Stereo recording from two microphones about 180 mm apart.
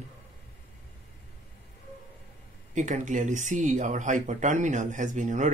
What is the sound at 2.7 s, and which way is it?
Speech, 45° right (ahead or behind).